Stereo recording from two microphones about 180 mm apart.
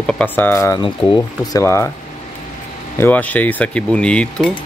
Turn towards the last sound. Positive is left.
turn(degrees=5)  # may be behind; listen again after turning